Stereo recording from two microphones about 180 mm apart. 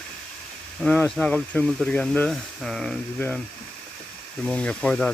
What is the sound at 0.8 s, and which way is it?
Speech, 5° left (ahead or behind).